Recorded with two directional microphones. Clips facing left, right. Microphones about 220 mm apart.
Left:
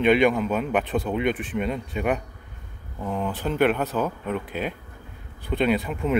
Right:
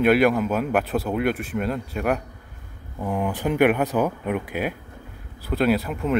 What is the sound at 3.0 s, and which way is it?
Speech, 10° right (ahead or behind).